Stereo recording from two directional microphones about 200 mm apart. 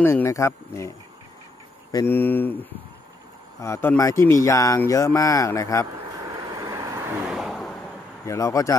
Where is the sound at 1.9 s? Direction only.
10° left (ahead or behind).